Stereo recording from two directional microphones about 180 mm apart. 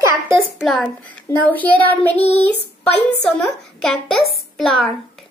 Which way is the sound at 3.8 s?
5° left (ahead or behind).